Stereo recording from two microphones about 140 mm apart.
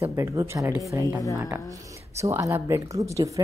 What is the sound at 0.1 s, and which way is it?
A woman's voice, 20° right (ahead or behind).